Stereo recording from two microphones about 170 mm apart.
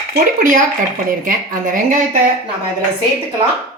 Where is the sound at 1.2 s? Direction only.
50° right (ahead or behind).